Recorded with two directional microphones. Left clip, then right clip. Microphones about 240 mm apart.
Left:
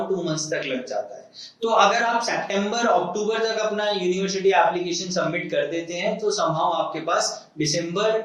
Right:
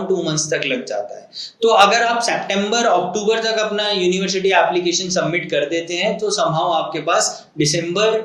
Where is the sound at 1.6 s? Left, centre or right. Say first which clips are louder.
Right 6 dB; right.